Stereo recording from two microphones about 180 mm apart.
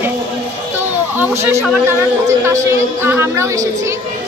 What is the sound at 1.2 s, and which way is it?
Speech, 15° right (ahead or behind).